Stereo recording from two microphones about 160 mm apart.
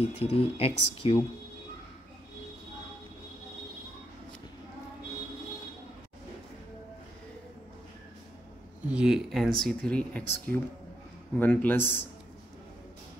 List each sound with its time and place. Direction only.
0.1 s speech: 40° left (ahead or behind)
8.8 s a man's voice: 5° right (ahead or behind); by 12.1 s 10° left (ahead or behind)